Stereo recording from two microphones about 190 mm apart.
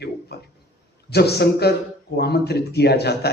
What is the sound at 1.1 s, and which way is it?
Speech, 60° left (ahead or behind).